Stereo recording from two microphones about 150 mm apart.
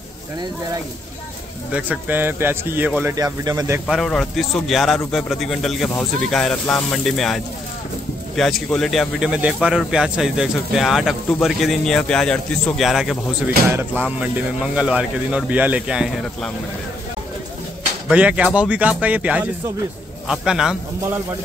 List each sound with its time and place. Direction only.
1.7 s speech: 10° right (ahead or behind)
3.2 s speech: 25° right (ahead or behind)
3.8 s speech: centre (ahead or behind)
13.7 s speech: 15° right (ahead or behind); by 16.5 s centre (ahead or behind)
18.0 s speech: 10° right (ahead or behind)